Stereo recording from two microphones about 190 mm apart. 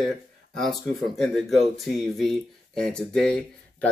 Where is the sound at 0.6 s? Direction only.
Centre (ahead or behind).